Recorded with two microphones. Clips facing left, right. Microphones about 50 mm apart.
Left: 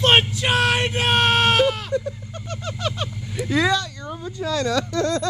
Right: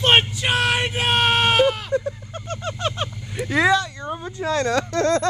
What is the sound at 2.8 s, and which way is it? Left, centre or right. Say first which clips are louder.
Speech: left 1 dB; centre.